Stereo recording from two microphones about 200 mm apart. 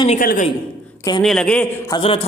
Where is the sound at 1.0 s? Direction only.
20° left (ahead or behind).